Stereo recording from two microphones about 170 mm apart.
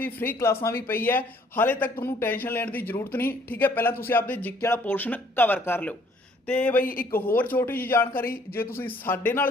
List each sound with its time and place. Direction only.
0.0 s a man's voice: 10° left (ahead or behind)
6.8 s speech: 55° left (ahead or behind)
7.3 s a man's voice: 10° left (ahead or behind)